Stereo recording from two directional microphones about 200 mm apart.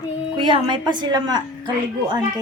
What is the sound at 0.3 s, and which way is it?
A woman's voice, 25° right (ahead or behind).